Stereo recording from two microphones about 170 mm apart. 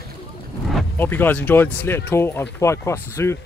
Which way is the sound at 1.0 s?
10° left (ahead or behind).